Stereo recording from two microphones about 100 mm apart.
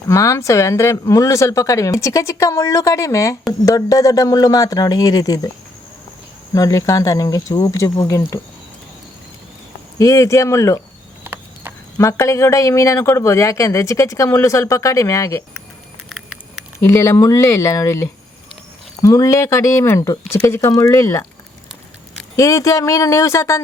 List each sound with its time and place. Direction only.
0.1 s speech: 30° left (ahead or behind)
6.5 s speech: 35° left (ahead or behind)
10.0 s speech: 35° left (ahead or behind)
11.2 s a sound: 20° right (ahead or behind)
11.9 s speech: 30° left (ahead or behind)
16.0 s a sound: centre (ahead or behind)
16.8 s speech: 30° left (ahead or behind)
22.4 s speech: 30° left (ahead or behind)